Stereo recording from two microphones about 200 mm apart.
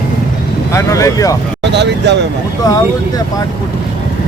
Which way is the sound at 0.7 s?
15° left (ahead or behind).